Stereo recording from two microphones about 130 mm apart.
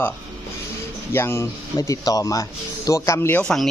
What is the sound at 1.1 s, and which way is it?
Speech, 20° left (ahead or behind).